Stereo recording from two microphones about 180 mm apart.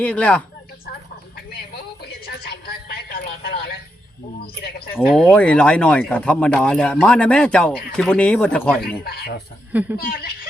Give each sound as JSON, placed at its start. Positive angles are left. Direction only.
{"t": 0.0, "sound": "speech", "side_deg": 10}
{"t": 2.0, "sound": "a sound", "side_deg": 60}
{"t": 5.1, "sound": "speech", "side_deg": 5}
{"t": 9.0, "sound": "speech", "side_deg": 60}